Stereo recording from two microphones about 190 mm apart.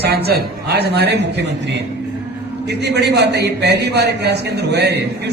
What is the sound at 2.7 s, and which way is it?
A man's voice, 65° right (ahead or behind).